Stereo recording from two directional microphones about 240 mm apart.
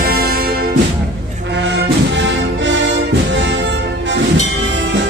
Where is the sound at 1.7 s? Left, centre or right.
Right.